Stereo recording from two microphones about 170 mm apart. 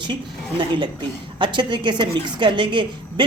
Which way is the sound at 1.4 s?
25° right (ahead or behind).